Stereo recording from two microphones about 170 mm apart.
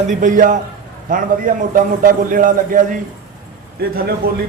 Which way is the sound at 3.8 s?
65° right (ahead or behind).